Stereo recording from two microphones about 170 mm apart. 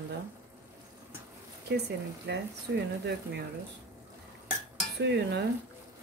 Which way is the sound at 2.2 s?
80° right.